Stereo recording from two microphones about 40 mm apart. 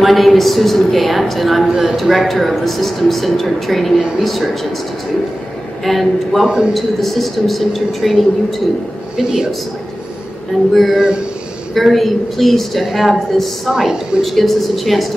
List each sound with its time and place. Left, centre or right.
0.0 s a woman's voice: centre
5.9 s a woman's voice: centre
6.4 s a man's voice: right
6.7 s a woman's voice: centre
9.1 s speech: centre
10.7 s a woman's voice: centre